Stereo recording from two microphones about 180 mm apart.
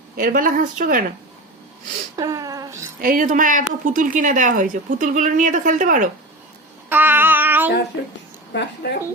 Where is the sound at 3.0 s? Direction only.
50° right (ahead or behind).